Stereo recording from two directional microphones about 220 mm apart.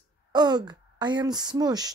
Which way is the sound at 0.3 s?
20° right (ahead or behind).